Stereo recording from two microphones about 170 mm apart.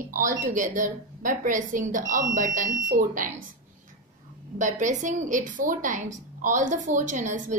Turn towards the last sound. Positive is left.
turn(degrees=-45)  # may be behind; listen again after turning